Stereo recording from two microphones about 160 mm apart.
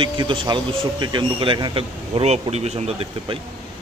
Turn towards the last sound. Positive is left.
turn(degrees=-40)  # may be behind; listen again after turning